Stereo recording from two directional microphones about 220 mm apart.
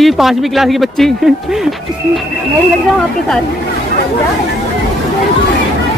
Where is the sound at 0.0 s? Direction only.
Centre (ahead or behind).